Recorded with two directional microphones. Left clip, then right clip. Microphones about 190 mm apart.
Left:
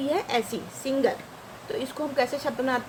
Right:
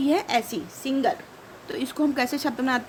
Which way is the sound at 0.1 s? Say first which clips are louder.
Even; 50° right (ahead or behind).